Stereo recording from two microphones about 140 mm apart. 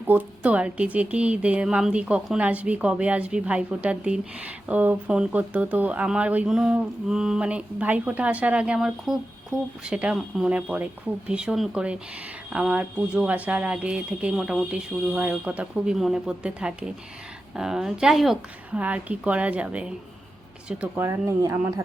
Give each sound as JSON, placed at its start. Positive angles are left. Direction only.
{"t": 0.1, "sound": "a woman's voice", "side_deg": -10}
{"t": 21.0, "sound": "speech", "side_deg": -20}